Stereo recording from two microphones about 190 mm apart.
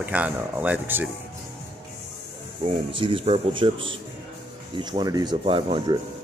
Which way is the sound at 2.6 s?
25° right (ahead or behind).